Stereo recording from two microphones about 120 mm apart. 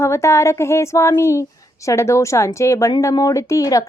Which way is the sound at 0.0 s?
25° left (ahead or behind).